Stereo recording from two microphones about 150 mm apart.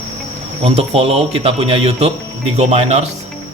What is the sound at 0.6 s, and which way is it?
Speech, 40° right (ahead or behind).